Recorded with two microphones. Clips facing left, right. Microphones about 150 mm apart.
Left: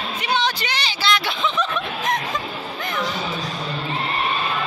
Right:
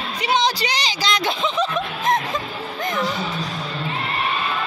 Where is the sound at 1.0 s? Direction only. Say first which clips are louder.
Left 1 dB; 40° right (ahead or behind).